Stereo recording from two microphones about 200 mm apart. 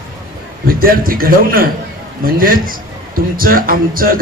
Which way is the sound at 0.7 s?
45° right (ahead or behind).